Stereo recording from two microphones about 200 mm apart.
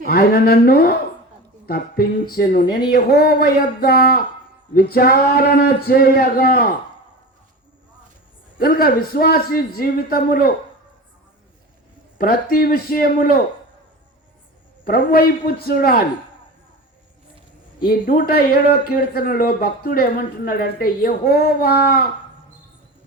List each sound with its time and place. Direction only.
0.0 s speech: 50° left (ahead or behind)
8.5 s speech: 45° left (ahead or behind)
12.1 s speech: 45° left (ahead or behind)
14.8 s speech: 50° left (ahead or behind)
17.8 s speech: 45° left (ahead or behind)